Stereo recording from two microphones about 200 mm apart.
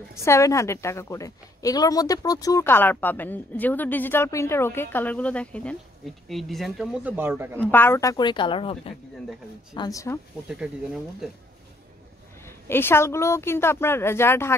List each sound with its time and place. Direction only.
0.1 s a woman's voice: 15° left (ahead or behind); by 7.7 s 10° right (ahead or behind)
7.7 s a woman's voice: 10° left (ahead or behind)
10.5 s speech: 5° right (ahead or behind)
12.4 s a woman's voice: 10° left (ahead or behind)